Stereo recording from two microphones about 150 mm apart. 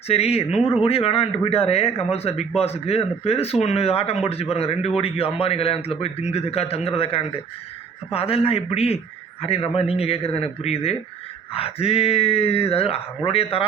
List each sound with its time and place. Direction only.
0.1 s speech: 45° left (ahead or behind)